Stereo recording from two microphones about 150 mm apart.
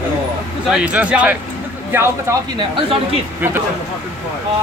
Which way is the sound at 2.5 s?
35° right (ahead or behind).